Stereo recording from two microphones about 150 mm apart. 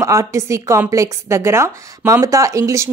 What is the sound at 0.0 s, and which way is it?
A woman's voice, 20° right (ahead or behind).